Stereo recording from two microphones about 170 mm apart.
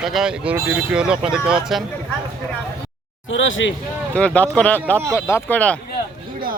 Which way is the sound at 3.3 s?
90° left.